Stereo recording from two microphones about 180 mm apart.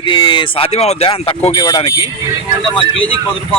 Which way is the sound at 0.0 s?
25° left (ahead or behind).